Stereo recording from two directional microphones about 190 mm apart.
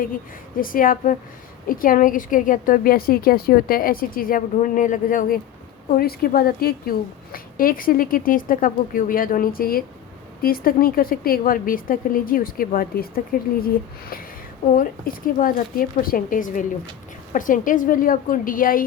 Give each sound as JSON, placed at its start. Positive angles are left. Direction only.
{"t": 0.0, "sound": "a woman's voice", "side_deg": 45}
{"t": 14.8, "sound": "a woman's voice", "side_deg": 45}